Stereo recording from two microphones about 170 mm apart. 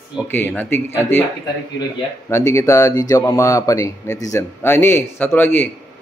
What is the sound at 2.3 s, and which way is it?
Speech, 15° left (ahead or behind).